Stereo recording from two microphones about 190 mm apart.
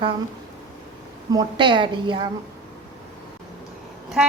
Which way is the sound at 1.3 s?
25° right (ahead or behind).